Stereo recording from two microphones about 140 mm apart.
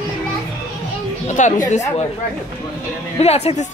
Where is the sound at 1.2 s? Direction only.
65° left (ahead or behind).